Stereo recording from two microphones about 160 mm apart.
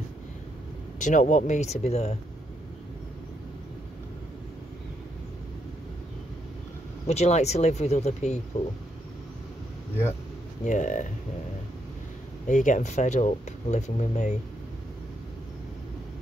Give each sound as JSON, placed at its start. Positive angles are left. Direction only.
{"t": 0.9, "sound": "speech", "side_deg": 50}
{"t": 7.1, "sound": "speech", "side_deg": 45}
{"t": 10.6, "sound": "speech", "side_deg": 50}
{"t": 12.4, "sound": "speech", "side_deg": 50}